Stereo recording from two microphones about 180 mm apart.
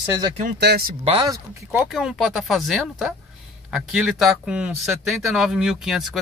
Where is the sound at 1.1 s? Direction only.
20° right (ahead or behind).